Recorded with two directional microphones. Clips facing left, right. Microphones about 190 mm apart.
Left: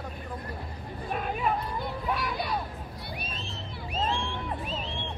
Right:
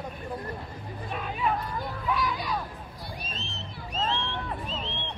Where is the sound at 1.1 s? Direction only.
50° left (ahead or behind).